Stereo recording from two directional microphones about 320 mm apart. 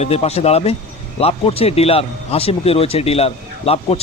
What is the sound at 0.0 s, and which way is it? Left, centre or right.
Speech, centre.